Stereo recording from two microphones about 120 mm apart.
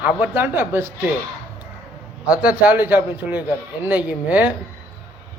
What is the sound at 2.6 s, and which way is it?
Speech, 15° right (ahead or behind).